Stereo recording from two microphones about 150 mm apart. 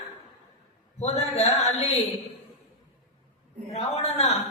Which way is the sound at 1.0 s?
45° left (ahead or behind).